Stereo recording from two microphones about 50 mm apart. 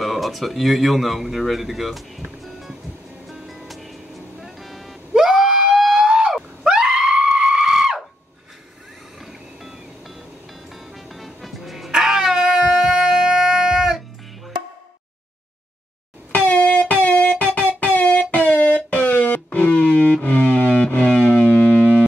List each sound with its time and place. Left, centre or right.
0.0 s speech: centre
3.3 s music: centre
5.1 s screaming: centre
9.2 s music: centre
16.3 s a sound: left
18.9 s music: left